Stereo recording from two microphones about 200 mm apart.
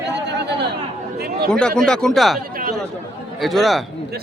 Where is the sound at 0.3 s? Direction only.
60° right (ahead or behind).